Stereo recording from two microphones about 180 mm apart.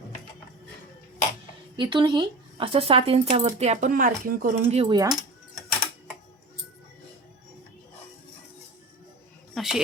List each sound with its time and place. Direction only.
1.7 s speech: 25° right (ahead or behind)
4.9 s speech: 20° right (ahead or behind)
9.6 s speech: centre (ahead or behind)